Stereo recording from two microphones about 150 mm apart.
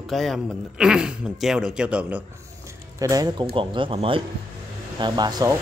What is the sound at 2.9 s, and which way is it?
Speech, 25° right (ahead or behind).